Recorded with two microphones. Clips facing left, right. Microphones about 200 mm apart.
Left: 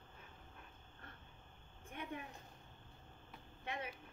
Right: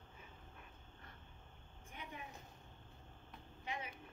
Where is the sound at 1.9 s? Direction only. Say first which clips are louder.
Left 5 dB; 55° left (ahead or behind).